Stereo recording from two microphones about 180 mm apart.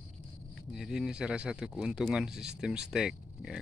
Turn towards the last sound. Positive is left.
turn(degrees=-5)  # may be behind; listen again after turning